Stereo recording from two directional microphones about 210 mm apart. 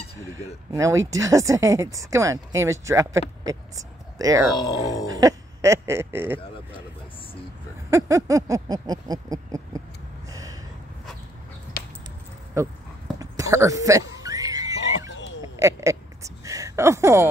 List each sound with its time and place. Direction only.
0.7 s speech: 15° right (ahead or behind)
4.6 s speech: 20° left (ahead or behind)
5.0 s music: 15° right (ahead or behind)
7.9 s a sound: 15° right (ahead or behind)
12.6 s speech: 15° right (ahead or behind)
13.2 s a sound: 15° right (ahead or behind)